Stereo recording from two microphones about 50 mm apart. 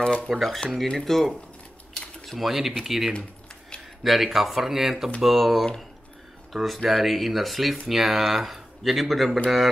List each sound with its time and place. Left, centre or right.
0.0 s speech: centre
0.3 s speech: centre
2.3 s speech: centre